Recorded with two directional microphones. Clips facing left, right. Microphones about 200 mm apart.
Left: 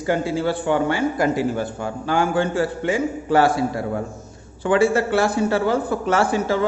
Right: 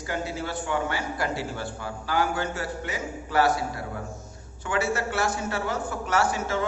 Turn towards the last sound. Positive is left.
turn(degrees=30)  # may be behind; listen again after turning